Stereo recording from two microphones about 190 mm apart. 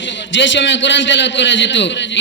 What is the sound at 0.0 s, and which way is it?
A man's voice, 75° left (ahead or behind).